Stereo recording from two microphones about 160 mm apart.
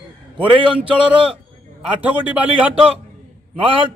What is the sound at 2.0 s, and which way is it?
Speech, 10° right (ahead or behind).